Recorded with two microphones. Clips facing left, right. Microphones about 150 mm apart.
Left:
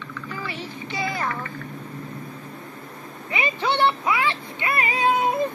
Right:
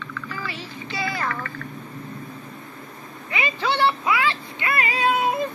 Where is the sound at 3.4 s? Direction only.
20° left (ahead or behind).